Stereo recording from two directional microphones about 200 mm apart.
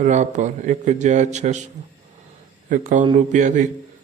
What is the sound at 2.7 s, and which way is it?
Speech, 40° right (ahead or behind).